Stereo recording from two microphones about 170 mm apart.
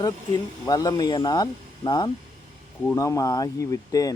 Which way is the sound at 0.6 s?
20° left (ahead or behind).